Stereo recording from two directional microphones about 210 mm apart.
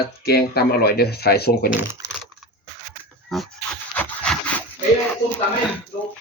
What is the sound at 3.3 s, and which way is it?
Speech, centre (ahead or behind).